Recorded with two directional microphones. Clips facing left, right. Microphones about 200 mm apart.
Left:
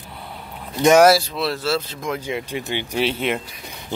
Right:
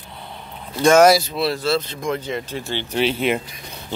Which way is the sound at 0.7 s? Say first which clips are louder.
Even; 15° left (ahead or behind).